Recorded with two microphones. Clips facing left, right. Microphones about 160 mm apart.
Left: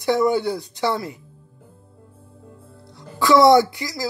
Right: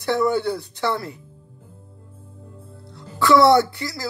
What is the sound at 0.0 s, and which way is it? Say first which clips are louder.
Speech: left 2 dB; 15° left (ahead or behind).